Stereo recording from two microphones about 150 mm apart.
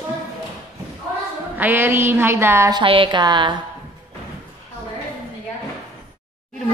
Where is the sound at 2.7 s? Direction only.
35° right (ahead or behind).